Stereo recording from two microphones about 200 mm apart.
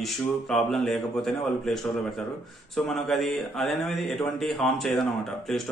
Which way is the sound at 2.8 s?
Centre (ahead or behind).